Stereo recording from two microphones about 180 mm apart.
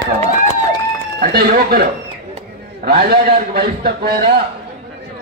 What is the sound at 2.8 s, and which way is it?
A man's voice, 60° right (ahead or behind).